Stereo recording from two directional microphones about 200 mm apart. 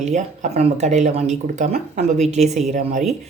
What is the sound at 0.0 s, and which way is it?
Speech, 35° right (ahead or behind).